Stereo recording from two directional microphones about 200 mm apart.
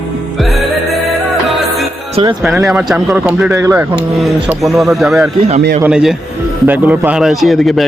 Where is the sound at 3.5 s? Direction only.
15° right (ahead or behind).